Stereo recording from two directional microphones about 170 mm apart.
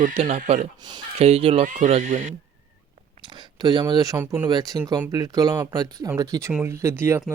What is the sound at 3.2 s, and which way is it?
Speech, 25° right (ahead or behind).